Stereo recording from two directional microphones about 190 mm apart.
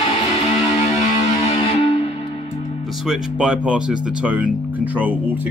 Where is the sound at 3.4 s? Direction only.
5° right (ahead or behind).